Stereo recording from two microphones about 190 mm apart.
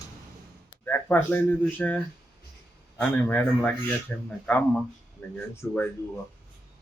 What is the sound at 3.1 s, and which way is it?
Speech, 10° left (ahead or behind).